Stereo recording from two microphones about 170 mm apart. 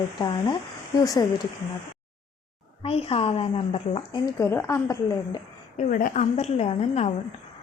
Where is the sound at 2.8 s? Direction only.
35° left (ahead or behind); by 5.4 s 20° left (ahead or behind).